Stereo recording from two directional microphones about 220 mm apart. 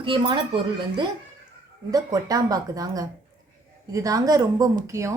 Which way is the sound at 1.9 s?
15° right (ahead or behind).